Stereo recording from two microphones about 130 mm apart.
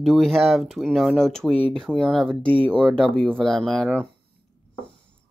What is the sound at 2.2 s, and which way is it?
Speech, 40° right (ahead or behind).